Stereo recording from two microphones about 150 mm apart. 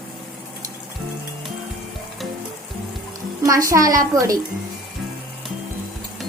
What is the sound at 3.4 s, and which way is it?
Speech, 20° right (ahead or behind).